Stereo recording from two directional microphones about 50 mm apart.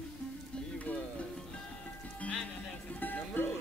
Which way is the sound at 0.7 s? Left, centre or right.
Left.